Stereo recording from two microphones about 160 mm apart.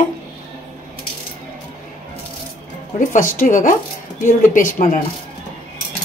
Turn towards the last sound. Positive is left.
turn(degrees=55)  # may be behind; listen again after turning